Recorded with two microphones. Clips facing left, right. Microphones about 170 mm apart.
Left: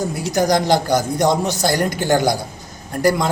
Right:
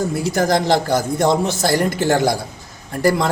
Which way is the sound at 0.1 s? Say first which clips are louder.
Even; 5° right (ahead or behind).